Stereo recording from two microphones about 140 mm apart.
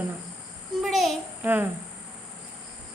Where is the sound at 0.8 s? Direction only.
Centre (ahead or behind).